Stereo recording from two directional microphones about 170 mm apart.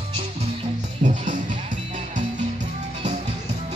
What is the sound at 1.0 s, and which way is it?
Music, 45° right (ahead or behind).